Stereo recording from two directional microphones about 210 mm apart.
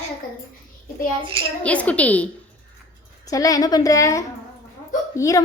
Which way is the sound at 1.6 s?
5° left (ahead or behind).